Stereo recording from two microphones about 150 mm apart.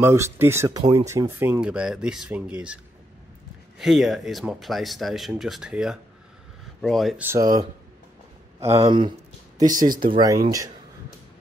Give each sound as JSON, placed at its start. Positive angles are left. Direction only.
{"t": 0.0, "sound": "speech", "side_deg": -15}
{"t": 7.2, "sound": "speech", "side_deg": -15}
{"t": 8.6, "sound": "speech", "side_deg": -35}
{"t": 9.8, "sound": "speech", "side_deg": -65}
{"t": 10.1, "sound": "speech", "side_deg": -25}